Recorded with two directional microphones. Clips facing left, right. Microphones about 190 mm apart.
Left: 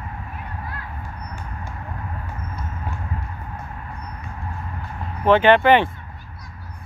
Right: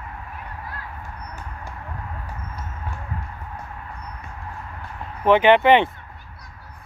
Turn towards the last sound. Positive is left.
turn(degrees=-20)  # may be behind; listen again after turning